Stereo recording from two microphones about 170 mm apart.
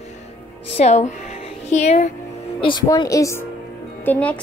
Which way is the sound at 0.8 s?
40° left (ahead or behind).